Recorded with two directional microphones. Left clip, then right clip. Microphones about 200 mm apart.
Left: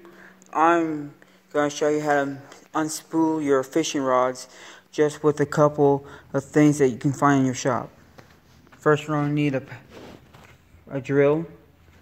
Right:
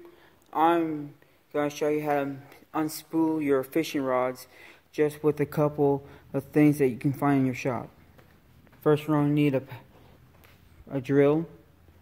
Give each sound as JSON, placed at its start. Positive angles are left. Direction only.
{"t": 0.5, "sound": "speech", "side_deg": -5}
{"t": 8.8, "sound": "speech", "side_deg": -25}
{"t": 10.9, "sound": "speech", "side_deg": -10}